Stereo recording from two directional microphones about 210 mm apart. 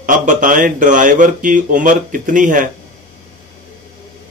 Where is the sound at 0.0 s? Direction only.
40° right (ahead or behind).